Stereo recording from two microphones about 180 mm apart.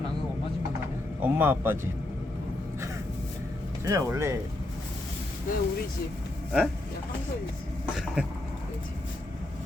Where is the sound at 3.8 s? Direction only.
15° right (ahead or behind).